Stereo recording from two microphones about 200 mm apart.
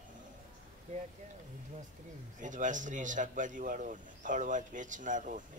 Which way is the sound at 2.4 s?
40° right (ahead or behind).